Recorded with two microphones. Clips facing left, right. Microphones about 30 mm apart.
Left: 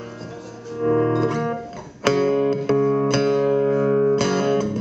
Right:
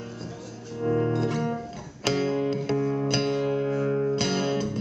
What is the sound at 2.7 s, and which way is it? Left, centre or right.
Music, left.